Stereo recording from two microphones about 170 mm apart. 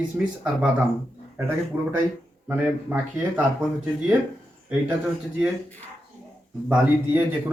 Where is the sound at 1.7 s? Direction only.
20° right (ahead or behind).